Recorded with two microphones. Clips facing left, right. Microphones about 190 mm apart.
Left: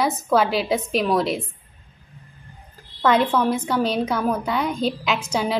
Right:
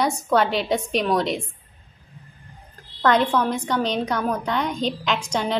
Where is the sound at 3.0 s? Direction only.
5° left (ahead or behind).